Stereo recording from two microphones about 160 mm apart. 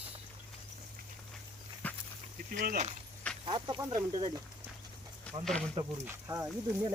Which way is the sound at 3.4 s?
30° right (ahead or behind).